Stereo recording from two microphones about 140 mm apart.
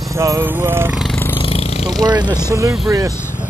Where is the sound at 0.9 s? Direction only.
Centre (ahead or behind).